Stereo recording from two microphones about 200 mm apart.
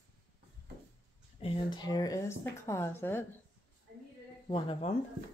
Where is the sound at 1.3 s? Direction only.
30° left (ahead or behind); by 3.2 s 10° left (ahead or behind).